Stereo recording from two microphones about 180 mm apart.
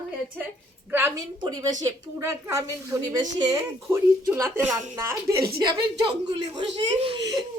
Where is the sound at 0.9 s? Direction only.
15° right (ahead or behind).